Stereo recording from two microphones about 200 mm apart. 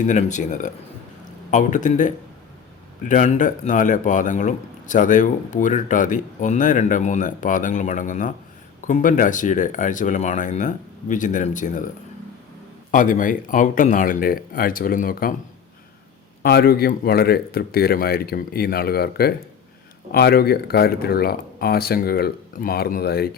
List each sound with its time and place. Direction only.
0.0 s a man's voice: 40° left (ahead or behind)
12.9 s speech: 40° left (ahead or behind)
16.4 s speech: 50° left (ahead or behind)